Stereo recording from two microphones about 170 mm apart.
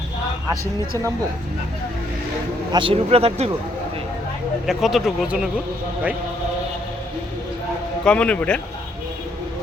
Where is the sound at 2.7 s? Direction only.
30° right (ahead or behind).